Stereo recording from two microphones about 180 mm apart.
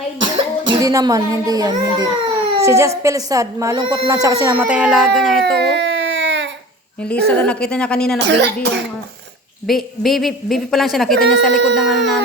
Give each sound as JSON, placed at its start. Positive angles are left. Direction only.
{"t": 0.2, "sound": "a child's voice", "side_deg": -25}
{"t": 4.5, "sound": "a woman's voice", "side_deg": -10}
{"t": 5.5, "sound": "baby cry", "side_deg": -70}
{"t": 7.0, "sound": "a woman's voice", "side_deg": 5}
{"t": 8.2, "sound": "speech", "side_deg": -75}
{"t": 9.6, "sound": "a woman's voice", "side_deg": 0}